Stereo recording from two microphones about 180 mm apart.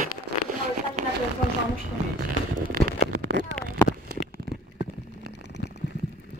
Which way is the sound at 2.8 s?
60° right (ahead or behind).